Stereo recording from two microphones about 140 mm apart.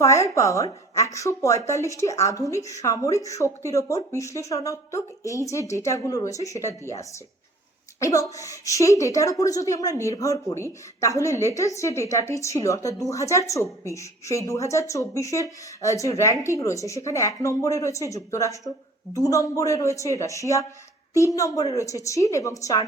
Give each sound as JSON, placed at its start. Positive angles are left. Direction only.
{"t": 0.0, "sound": "a woman's voice", "side_deg": 20}
{"t": 7.9, "sound": "a woman's voice", "side_deg": 25}